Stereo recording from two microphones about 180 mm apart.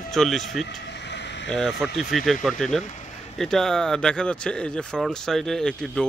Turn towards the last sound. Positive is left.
turn(degrees=5)  # may be behind; listen again after turning